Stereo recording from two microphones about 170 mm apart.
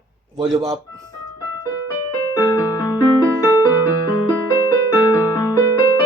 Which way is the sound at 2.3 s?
20° left (ahead or behind).